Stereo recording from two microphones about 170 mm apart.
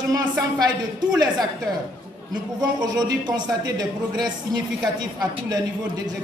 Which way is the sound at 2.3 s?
25° right (ahead or behind).